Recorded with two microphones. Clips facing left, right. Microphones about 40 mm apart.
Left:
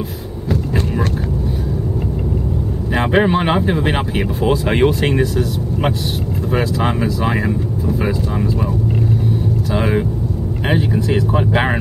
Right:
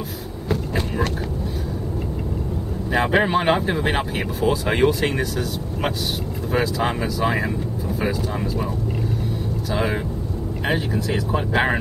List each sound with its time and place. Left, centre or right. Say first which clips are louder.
2.9 s speech: left 3 dB; centre
9.8 s speech: left 5 dB; centre
11.0 s speech: left 6 dB; left